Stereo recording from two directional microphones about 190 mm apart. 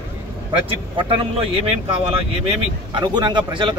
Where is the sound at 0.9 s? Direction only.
25° right (ahead or behind).